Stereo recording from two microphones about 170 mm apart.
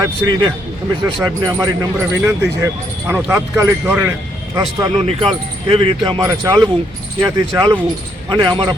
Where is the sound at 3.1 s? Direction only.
10° right (ahead or behind).